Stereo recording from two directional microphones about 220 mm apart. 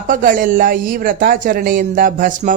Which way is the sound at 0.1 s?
40° right (ahead or behind).